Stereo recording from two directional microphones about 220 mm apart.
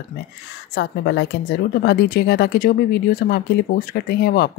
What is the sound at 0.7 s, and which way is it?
Speech, 50° left (ahead or behind).